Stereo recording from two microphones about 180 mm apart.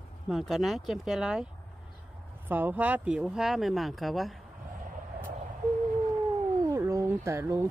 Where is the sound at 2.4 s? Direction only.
10° right (ahead or behind).